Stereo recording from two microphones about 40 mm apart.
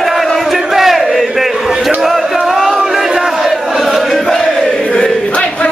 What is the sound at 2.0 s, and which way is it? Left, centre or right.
Music, centre.